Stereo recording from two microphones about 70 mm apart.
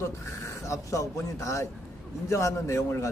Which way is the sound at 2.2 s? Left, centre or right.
Left.